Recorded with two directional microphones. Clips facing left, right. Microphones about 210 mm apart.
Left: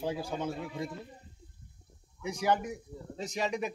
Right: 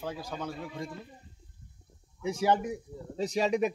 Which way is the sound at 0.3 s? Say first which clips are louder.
Left 2 dB; 25° left (ahead or behind).